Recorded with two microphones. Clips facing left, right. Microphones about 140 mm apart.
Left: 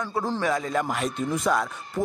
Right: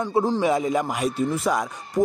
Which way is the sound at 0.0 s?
15° right (ahead or behind).